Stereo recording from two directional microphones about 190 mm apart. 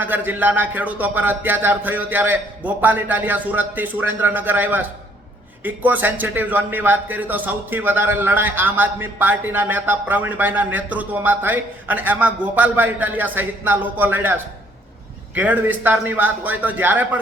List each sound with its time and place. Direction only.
0.0 s a man's voice: 10° right (ahead or behind)
15.4 s a man's voice: 10° right (ahead or behind)